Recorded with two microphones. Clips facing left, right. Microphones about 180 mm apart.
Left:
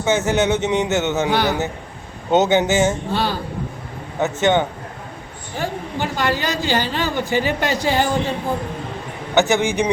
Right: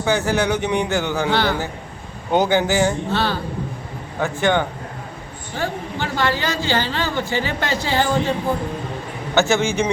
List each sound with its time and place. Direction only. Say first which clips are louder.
0.0 s a man's voice: left 1 dB; 20° left (ahead or behind)
9.3 s a man's voice: left 1 dB; 15° left (ahead or behind)